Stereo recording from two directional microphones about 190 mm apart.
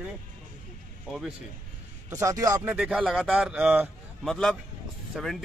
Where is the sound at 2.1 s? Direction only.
15° right (ahead or behind).